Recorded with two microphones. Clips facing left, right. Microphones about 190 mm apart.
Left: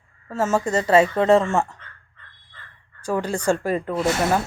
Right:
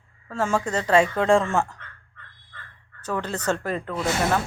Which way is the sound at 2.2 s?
60° right (ahead or behind).